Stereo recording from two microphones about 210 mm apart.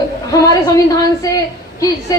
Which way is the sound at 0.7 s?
15° left (ahead or behind).